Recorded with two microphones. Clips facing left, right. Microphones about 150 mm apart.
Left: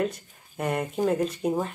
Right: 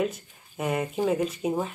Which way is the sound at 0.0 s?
5° right (ahead or behind).